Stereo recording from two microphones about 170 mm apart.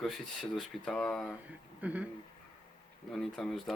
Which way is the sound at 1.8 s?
10° right (ahead or behind).